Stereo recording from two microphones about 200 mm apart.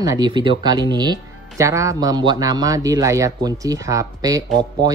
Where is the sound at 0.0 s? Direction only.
20° right (ahead or behind).